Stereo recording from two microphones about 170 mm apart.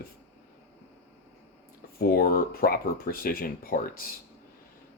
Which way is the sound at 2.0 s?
60° left (ahead or behind).